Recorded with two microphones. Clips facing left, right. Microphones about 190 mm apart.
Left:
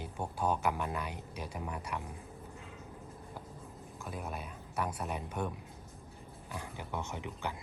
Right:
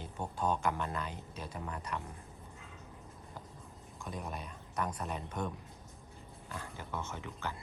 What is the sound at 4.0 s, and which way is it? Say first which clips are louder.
Speech: even; 5° left (ahead or behind).